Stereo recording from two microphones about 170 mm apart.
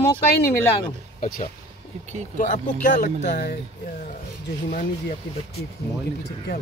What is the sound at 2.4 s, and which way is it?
Speech, 50° left (ahead or behind).